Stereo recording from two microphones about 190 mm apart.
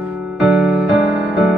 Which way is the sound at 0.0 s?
5° right (ahead or behind).